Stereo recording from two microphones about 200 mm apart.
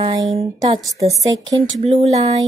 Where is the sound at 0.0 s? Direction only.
25° right (ahead or behind).